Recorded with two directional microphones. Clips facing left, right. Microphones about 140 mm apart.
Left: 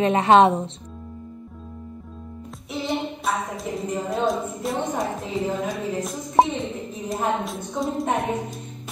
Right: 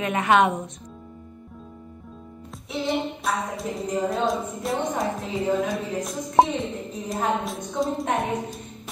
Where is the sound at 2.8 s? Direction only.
Centre (ahead or behind).